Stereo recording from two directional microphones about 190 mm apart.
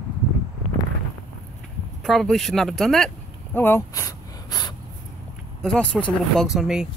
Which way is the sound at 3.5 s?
10° left (ahead or behind).